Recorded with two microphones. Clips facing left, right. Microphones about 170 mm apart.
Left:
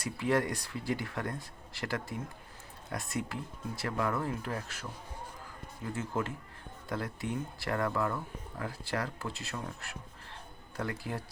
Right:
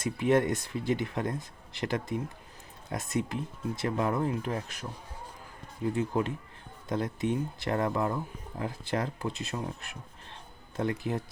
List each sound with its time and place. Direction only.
0.0 s speech: 20° right (ahead or behind)